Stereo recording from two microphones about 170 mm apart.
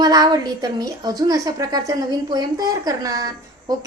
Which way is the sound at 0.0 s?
20° right (ahead or behind).